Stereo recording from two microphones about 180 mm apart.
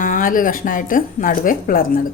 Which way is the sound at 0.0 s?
50° left (ahead or behind).